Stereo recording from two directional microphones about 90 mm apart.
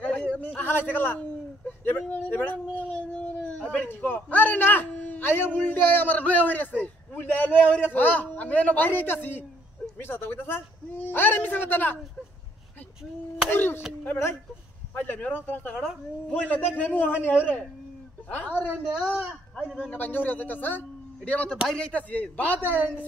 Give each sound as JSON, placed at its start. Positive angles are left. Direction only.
{"t": 0.0, "sound": "a sound", "side_deg": 15}
{"t": 0.6, "sound": "a man's voice", "side_deg": 20}
{"t": 6.8, "sound": "a sound", "side_deg": 20}
{"t": 7.9, "sound": "a man's voice", "side_deg": 20}
{"t": 13.5, "sound": "a man's voice", "side_deg": 25}
{"t": 15.0, "sound": "a man's voice", "side_deg": 20}
{"t": 18.5, "sound": "a woman's voice", "side_deg": -15}
{"t": 19.9, "sound": "a man's voice", "side_deg": 20}